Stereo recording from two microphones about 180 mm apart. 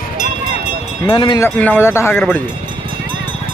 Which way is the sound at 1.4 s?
10° left (ahead or behind).